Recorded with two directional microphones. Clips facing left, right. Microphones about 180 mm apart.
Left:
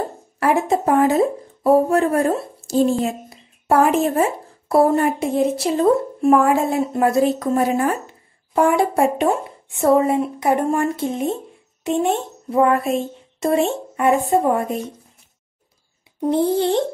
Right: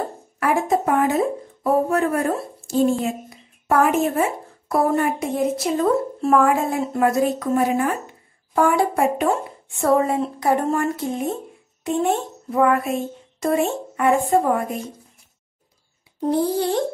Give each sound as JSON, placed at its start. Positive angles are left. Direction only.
{"t": 0.4, "sound": "a woman's voice", "side_deg": 25}
{"t": 16.3, "sound": "a woman's voice", "side_deg": 25}